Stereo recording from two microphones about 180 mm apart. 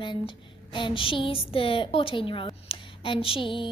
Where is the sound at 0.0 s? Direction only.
25° left (ahead or behind).